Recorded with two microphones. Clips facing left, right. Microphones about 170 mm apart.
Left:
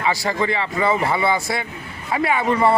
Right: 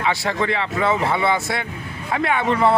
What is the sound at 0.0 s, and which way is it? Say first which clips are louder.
Speech: even; centre (ahead or behind).